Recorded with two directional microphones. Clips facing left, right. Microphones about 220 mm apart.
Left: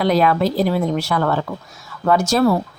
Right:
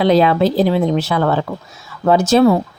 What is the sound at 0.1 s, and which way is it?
Speech, 25° right (ahead or behind).